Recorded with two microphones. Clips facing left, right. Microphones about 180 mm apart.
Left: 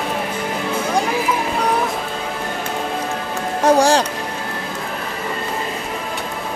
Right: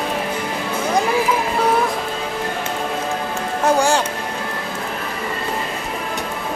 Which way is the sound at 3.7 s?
35° left (ahead or behind).